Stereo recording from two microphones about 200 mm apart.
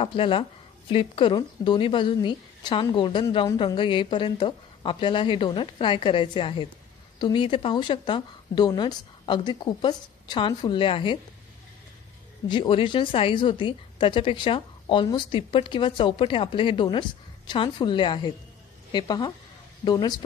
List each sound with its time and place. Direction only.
0.0 s a woman's voice: 25° left (ahead or behind)
12.4 s a woman's voice: 25° left (ahead or behind)